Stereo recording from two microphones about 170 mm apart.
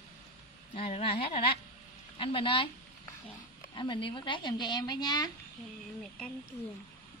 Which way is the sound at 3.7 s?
30° left (ahead or behind).